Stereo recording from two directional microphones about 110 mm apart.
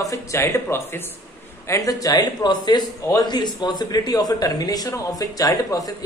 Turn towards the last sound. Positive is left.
turn(degrees=35)  # may be behind; listen again after turning